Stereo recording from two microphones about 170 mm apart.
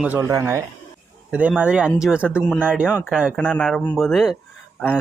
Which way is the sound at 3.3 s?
5° left (ahead or behind).